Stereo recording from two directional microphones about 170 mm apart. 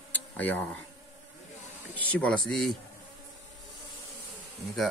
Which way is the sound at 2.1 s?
5° left (ahead or behind).